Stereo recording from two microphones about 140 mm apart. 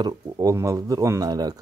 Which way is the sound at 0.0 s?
25° right (ahead or behind).